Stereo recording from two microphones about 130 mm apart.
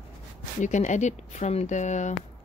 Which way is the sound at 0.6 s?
65° left (ahead or behind).